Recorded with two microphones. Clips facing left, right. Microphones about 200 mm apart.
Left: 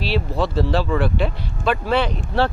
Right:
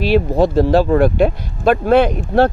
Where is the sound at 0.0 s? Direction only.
50° right (ahead or behind).